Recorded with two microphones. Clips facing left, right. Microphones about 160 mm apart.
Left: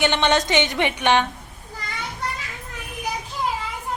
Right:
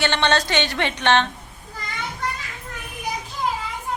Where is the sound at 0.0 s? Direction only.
15° left (ahead or behind).